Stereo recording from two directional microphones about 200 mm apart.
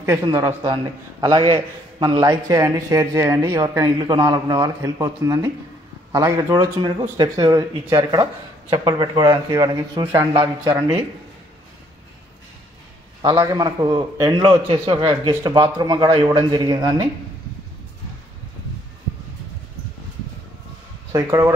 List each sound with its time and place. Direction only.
0.0 s a man's voice: 15° right (ahead or behind)
13.2 s speech: 20° right (ahead or behind)
21.1 s a man's voice: 15° right (ahead or behind)